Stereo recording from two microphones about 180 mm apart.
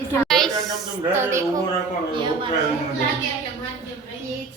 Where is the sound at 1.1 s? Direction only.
15° right (ahead or behind).